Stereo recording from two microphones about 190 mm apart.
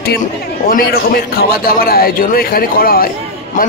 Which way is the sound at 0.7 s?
50° left (ahead or behind).